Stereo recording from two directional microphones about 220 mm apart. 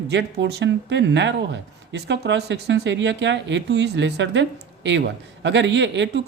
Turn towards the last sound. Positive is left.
turn(degrees=-55)  # may be behind; listen again after turning